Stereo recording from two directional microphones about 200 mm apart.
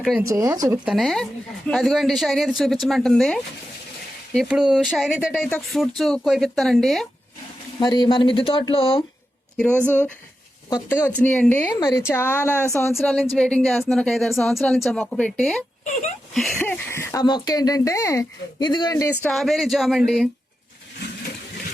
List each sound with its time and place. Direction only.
0.2 s speech: 15° right (ahead or behind)
0.9 s a woman's voice: centre (ahead or behind)
5.3 s a woman's voice: 10° left (ahead or behind)
7.8 s speech: 20° left (ahead or behind)
10.7 s speech: 20° left (ahead or behind)
11.2 s speech: 5° left (ahead or behind)
13.0 s a woman's voice: centre (ahead or behind)
16.3 s a sound: centre (ahead or behind)
16.6 s speech: 10° left (ahead or behind)
19.2 s a woman's voice: centre (ahead or behind)